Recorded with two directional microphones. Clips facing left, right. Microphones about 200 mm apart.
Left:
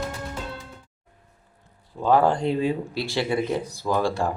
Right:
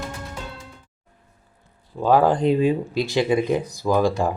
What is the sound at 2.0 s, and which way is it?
Speech, 15° right (ahead or behind).